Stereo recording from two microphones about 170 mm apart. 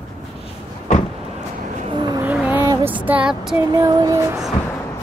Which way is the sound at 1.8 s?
30° right (ahead or behind).